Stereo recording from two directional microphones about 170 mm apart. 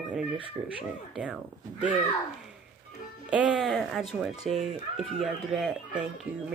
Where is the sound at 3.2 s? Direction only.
5° right (ahead or behind).